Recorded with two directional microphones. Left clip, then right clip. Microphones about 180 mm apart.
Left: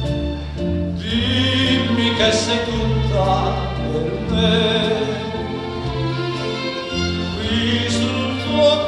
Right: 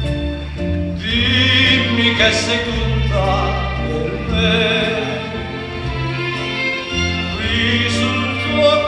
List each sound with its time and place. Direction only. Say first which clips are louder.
1.3 s music: right 5 dB; 55° left (ahead or behind)
7.5 s music: right 3 dB; 55° left (ahead or behind)